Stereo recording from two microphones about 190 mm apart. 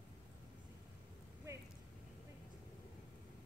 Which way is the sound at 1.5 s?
15° right (ahead or behind).